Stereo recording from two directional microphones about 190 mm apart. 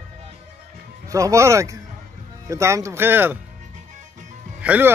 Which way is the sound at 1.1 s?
15° right (ahead or behind).